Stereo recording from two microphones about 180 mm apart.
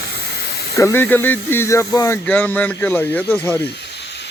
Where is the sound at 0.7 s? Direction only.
15° left (ahead or behind).